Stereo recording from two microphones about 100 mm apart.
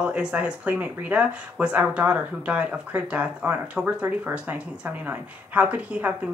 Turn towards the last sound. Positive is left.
turn(degrees=-15)  # may be behind; listen again after turning